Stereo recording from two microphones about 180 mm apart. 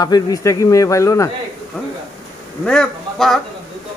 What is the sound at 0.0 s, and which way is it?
A man's voice, 20° left (ahead or behind).